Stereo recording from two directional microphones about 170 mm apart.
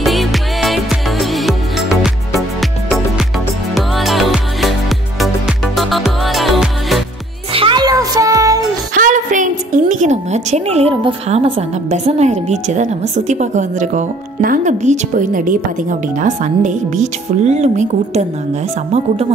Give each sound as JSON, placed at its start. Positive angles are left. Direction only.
{"t": 0.0, "sound": "music", "side_deg": 0}
{"t": 7.5, "sound": "music", "side_deg": -30}
{"t": 8.9, "sound": "a woman's voice", "side_deg": -50}